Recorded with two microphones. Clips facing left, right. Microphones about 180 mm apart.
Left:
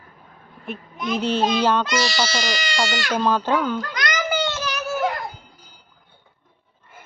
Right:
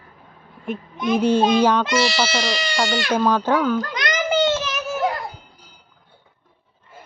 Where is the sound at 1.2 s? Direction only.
10° right (ahead or behind).